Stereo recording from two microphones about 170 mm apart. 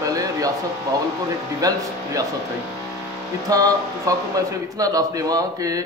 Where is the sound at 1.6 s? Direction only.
20° right (ahead or behind).